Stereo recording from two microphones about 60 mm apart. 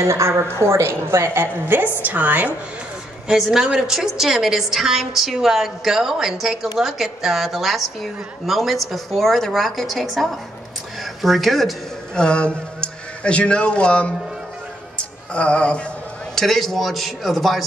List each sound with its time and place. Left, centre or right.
0.0 s a woman's voice: right
3.3 s a woman's voice: centre
11.2 s a woman's voice: centre
12.2 s a man's voice: centre
16.3 s a woman's voice: centre